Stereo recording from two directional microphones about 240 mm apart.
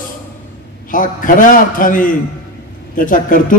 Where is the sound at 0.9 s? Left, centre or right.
Left.